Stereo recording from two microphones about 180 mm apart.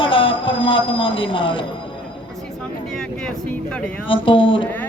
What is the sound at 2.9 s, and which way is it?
Speech, 5° left (ahead or behind).